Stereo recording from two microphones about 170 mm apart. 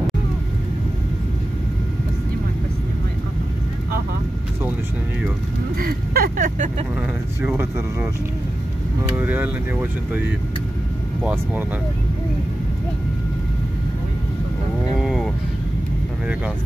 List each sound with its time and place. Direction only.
5.8 s vehicle: 60° right (ahead or behind)
7.4 s speech: 15° right (ahead or behind)
9.1 s speech: 10° right (ahead or behind)
15.0 s vehicle: 5° right (ahead or behind)